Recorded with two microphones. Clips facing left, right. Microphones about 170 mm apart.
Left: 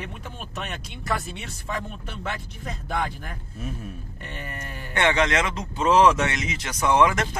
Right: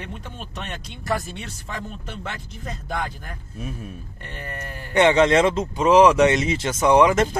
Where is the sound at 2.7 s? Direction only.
Centre (ahead or behind).